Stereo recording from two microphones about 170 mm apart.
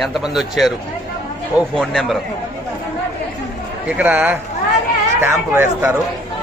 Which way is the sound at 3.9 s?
10° right (ahead or behind).